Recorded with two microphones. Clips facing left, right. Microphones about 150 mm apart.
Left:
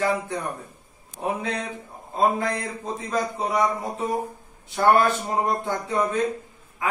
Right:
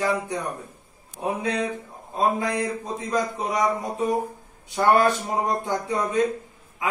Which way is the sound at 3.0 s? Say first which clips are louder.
Right 1 dB; 15° right (ahead or behind).